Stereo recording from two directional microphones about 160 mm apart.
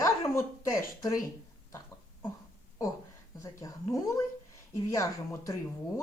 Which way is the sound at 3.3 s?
20° left (ahead or behind).